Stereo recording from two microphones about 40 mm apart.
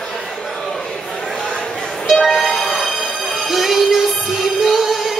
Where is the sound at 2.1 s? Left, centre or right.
Centre.